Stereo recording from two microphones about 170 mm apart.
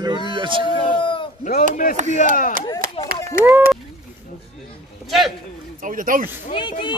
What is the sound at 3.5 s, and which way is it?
Speech, 10° right (ahead or behind).